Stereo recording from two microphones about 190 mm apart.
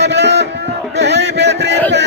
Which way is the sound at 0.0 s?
65° right (ahead or behind).